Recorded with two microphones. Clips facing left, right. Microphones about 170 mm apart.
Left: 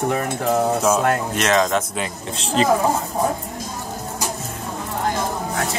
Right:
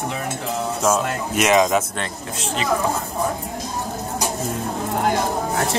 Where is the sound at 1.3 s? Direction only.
10° right (ahead or behind).